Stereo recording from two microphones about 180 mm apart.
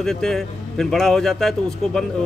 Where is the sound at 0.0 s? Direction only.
Centre (ahead or behind).